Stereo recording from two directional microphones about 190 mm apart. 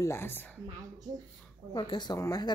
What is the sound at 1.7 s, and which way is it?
Speech, 20° left (ahead or behind).